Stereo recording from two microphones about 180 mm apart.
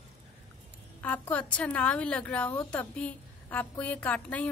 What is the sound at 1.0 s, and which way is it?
A woman's voice, 10° left (ahead or behind).